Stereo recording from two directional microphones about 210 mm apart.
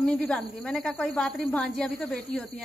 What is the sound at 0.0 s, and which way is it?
Speech, 5° left (ahead or behind).